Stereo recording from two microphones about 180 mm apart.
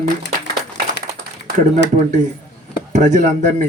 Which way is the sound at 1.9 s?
40° right (ahead or behind).